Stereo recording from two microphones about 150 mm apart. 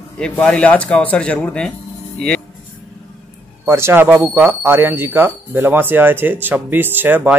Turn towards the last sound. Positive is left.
turn(degrees=-10)  # may be behind; listen again after turning